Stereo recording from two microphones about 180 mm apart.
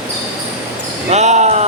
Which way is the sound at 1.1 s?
40° right (ahead or behind).